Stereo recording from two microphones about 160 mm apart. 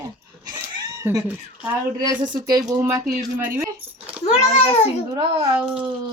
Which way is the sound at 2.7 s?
15° right (ahead or behind).